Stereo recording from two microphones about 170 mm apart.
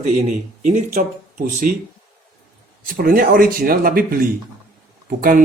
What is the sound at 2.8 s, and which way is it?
Speech, 60° right (ahead or behind).